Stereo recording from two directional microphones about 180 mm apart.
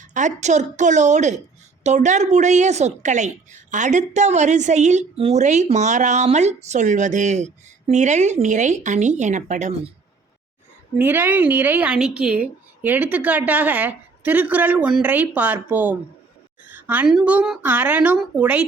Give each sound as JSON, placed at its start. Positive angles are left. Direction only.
{"t": 0.1, "sound": "a woman's voice", "side_deg": -45}
{"t": 10.9, "sound": "a woman's voice", "side_deg": -10}